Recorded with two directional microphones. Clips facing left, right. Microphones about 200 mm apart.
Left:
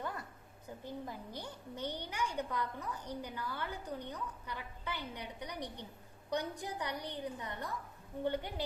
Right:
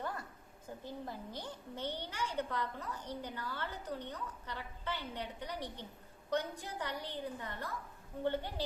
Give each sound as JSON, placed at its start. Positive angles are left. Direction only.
{"t": 0.9, "sound": "a woman's voice", "side_deg": 15}